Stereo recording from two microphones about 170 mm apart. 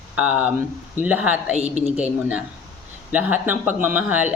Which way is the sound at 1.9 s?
5° right (ahead or behind).